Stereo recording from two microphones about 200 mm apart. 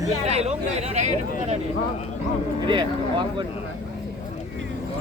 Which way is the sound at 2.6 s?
25° right (ahead or behind).